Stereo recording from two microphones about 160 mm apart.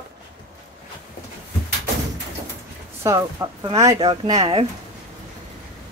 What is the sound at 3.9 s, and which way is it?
Speech, 30° right (ahead or behind).